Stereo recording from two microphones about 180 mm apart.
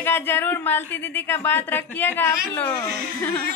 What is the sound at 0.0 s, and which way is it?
A woman's voice, 10° left (ahead or behind).